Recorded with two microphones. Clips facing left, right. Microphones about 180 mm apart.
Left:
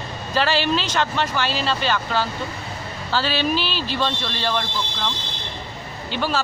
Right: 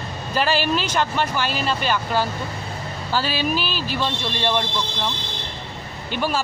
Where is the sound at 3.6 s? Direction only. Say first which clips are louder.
Even; 45° right (ahead or behind).